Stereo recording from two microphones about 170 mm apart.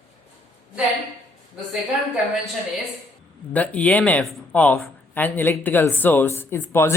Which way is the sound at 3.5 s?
10° left (ahead or behind).